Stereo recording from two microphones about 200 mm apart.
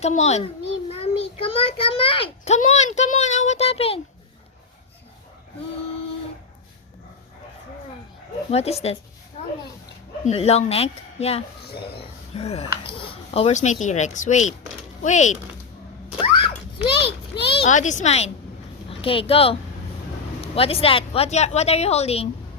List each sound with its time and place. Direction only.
0.0 s a child's voice: 35° left (ahead or behind)
8.4 s a child's voice: 30° left (ahead or behind)
10.2 s a child's voice: 30° left (ahead or behind)
16.8 s a child's voice: 25° left (ahead or behind)
17.7 s a child's voice: 40° left (ahead or behind)